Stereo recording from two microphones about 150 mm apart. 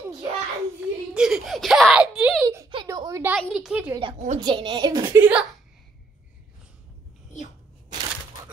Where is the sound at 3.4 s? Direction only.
Centre (ahead or behind).